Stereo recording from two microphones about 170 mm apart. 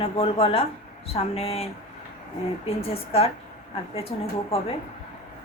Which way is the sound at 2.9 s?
35° left (ahead or behind).